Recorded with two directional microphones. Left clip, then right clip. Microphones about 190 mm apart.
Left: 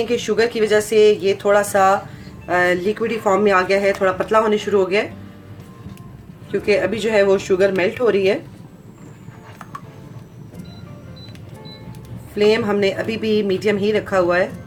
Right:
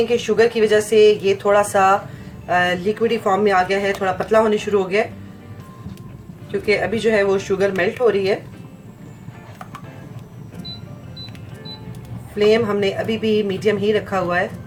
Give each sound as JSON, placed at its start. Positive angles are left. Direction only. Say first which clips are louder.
{"t": 0.1, "sound": "speech", "louder": "right 2 dB", "side_deg": 35}
{"t": 6.5, "sound": "speech", "louder": "left 1 dB", "side_deg": 35}
{"t": 12.4, "sound": "speech", "louder": "even", "side_deg": 35}